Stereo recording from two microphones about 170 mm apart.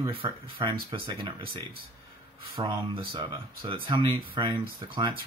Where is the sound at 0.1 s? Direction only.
30° right (ahead or behind).